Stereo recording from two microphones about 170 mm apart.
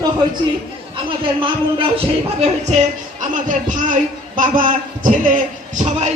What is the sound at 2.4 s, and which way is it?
Speech, 40° right (ahead or behind).